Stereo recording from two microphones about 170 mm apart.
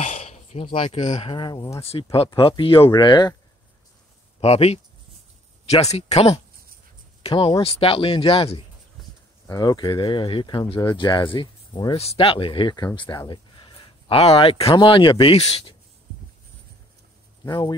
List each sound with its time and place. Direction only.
0.0 s speech: 40° left (ahead or behind)
4.4 s speech: 40° left (ahead or behind)
17.5 s speech: 20° left (ahead or behind)